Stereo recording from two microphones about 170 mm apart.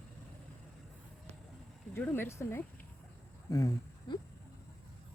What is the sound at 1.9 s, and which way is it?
Speech, 10° left (ahead or behind).